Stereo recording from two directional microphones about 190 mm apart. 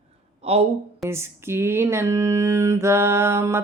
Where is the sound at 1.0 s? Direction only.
15° right (ahead or behind).